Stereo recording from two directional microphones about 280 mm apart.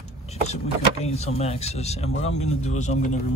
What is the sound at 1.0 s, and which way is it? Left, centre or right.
Speech, left.